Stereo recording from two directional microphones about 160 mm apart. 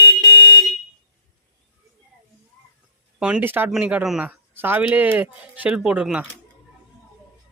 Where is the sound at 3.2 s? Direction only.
10° right (ahead or behind).